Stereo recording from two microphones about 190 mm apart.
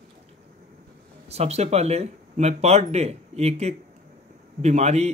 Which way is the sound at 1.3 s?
35° right (ahead or behind).